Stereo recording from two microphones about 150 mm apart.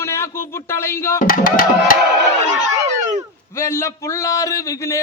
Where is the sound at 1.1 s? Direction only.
70° left (ahead or behind).